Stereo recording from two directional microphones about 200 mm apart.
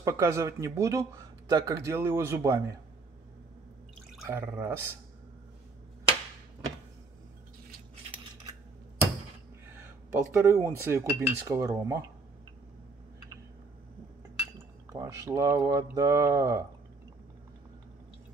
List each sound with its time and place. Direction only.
0.0 s speech: 15° right (ahead or behind)
4.2 s speech: 10° right (ahead or behind)
9.7 s speech: 10° right (ahead or behind)
14.9 s speech: 15° right (ahead or behind)